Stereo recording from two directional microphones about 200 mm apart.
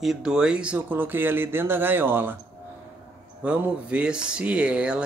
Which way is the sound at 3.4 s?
5° right (ahead or behind).